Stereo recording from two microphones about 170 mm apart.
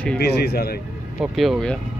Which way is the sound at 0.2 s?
70° left (ahead or behind).